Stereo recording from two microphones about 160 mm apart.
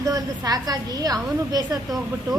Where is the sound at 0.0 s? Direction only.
20° right (ahead or behind).